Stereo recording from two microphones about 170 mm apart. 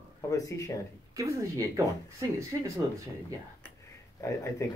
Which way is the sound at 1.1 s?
20° right (ahead or behind).